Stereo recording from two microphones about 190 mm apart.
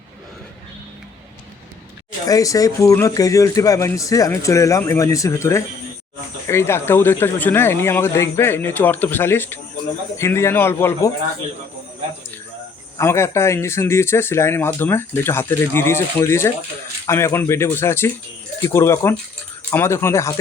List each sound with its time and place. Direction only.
2.2 s speech: 20° left (ahead or behind)
13.0 s speech: 15° left (ahead or behind)